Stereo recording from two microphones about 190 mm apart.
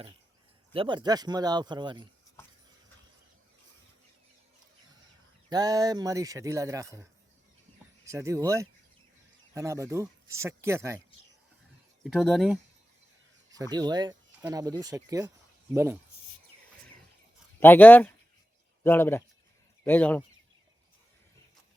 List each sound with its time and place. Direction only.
0.7 s speech: 25° right (ahead or behind)
5.5 s a man's voice: 20° right (ahead or behind)
8.0 s a man's voice: 15° right (ahead or behind)
12.0 s speech: centre (ahead or behind)
13.5 s a man's voice: 20° right (ahead or behind)
17.6 s speech: 10° left (ahead or behind)